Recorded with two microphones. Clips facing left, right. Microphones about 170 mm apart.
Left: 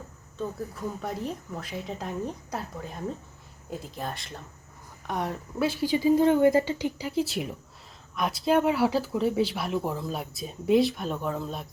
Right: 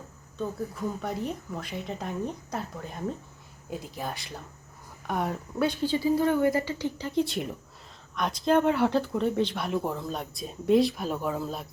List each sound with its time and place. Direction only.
0.3 s speech: centre (ahead or behind)
5.8 s speech: 15° left (ahead or behind)
7.1 s speech: 5° left (ahead or behind)